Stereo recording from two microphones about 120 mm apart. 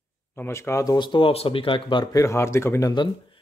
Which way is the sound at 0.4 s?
20° left (ahead or behind).